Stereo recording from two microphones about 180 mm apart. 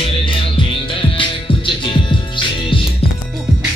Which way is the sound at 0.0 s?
30° left (ahead or behind).